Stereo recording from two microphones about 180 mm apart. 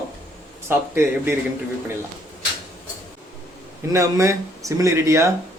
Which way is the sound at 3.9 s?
15° right (ahead or behind).